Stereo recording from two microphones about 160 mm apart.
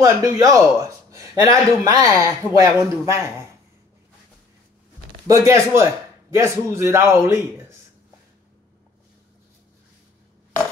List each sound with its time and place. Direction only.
0.0 s speech: 20° right (ahead or behind)
5.2 s a man's voice: 20° right (ahead or behind)